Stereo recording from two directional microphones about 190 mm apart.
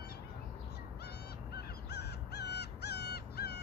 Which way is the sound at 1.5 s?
60° left (ahead or behind).